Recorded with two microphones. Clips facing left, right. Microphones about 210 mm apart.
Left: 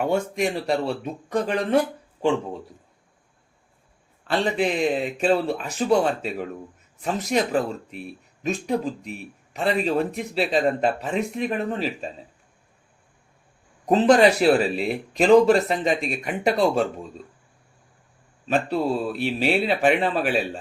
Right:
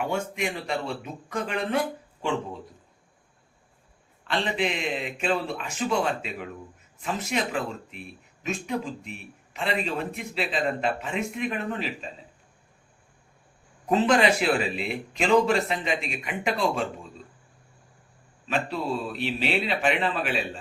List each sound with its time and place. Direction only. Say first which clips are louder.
0.1 s speech: left 6 dB; 40° left (ahead or behind)
4.3 s speech: left 5 dB; 40° left (ahead or behind)
13.8 s speech: left 5 dB; 40° left (ahead or behind)
19.2 s speech: left 5 dB; 45° left (ahead or behind)